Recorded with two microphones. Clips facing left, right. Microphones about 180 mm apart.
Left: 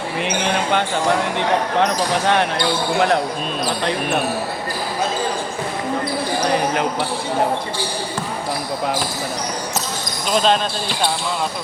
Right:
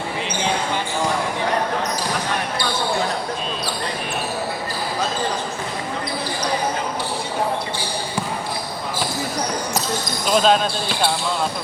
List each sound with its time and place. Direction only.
0.3 s basketball bounce: 65° left (ahead or behind)
1.8 s speech: 70° left (ahead or behind)
10.3 s speech: 5° right (ahead or behind)